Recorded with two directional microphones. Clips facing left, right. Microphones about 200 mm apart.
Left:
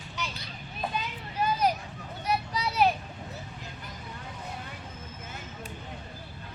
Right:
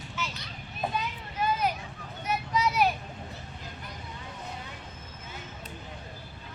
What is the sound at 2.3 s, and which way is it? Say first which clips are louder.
Vehicle: right 2 dB; 30° left (ahead or behind).